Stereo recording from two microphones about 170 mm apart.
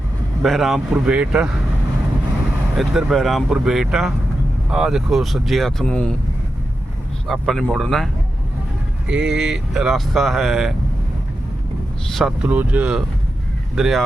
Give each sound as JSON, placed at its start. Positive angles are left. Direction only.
{"t": 0.4, "sound": "speech", "side_deg": 0}
{"t": 2.7, "sound": "speech", "side_deg": 0}
{"t": 7.3, "sound": "speech", "side_deg": 0}
{"t": 12.0, "sound": "speech", "side_deg": 0}